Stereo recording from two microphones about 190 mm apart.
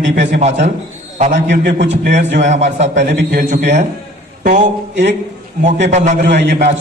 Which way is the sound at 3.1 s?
65° right (ahead or behind).